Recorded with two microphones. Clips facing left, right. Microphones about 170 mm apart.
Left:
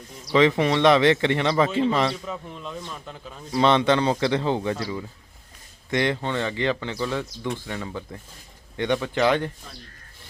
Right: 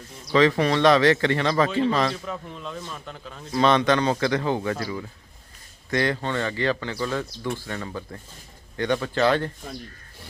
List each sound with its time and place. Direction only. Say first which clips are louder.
0.3 s speech: even; 20° left (ahead or behind)
2.2 s a man's voice: even; 5° left (ahead or behind)
3.6 s speech: even; 25° left (ahead or behind)